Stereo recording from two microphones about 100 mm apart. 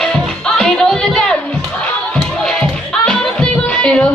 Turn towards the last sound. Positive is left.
turn(degrees=10)  # may be behind; listen again after turning